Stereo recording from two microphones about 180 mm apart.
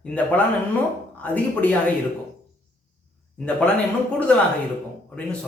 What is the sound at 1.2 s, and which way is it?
Speech, 10° left (ahead or behind).